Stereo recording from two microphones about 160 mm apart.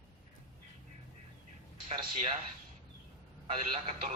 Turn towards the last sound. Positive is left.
turn(degrees=-35)  # may be behind; listen again after turning